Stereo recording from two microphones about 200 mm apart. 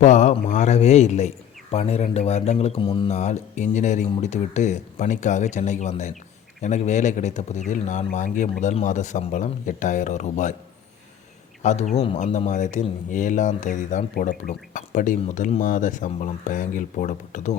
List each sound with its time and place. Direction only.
0.0 s speech: 35° left (ahead or behind)
11.6 s speech: 35° left (ahead or behind)